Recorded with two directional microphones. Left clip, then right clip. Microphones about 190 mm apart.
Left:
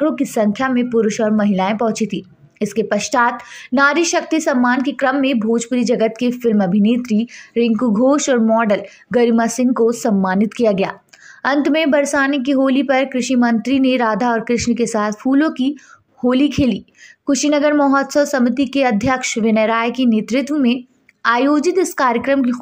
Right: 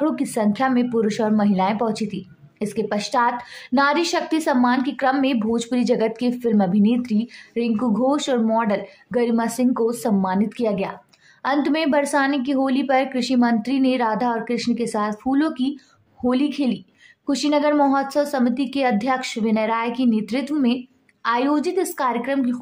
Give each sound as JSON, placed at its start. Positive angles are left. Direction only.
{"t": 0.0, "sound": "a woman's voice", "side_deg": 10}